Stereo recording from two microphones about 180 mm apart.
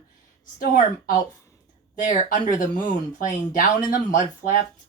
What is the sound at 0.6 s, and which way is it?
Speech, 50° left (ahead or behind).